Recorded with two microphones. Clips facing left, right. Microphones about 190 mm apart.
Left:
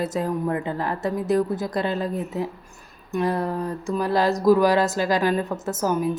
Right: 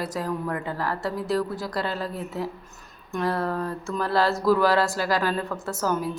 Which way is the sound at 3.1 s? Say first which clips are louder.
Left 2 dB; 15° left (ahead or behind).